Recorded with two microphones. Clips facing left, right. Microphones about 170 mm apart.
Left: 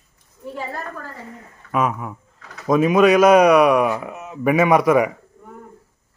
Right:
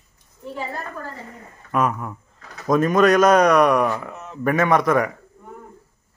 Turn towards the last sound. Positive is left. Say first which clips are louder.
# left 3 dB
turn(degrees=10)  # may be behind; listen again after turning